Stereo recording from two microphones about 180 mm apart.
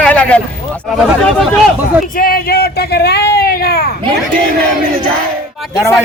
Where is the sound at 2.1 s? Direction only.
55° left (ahead or behind).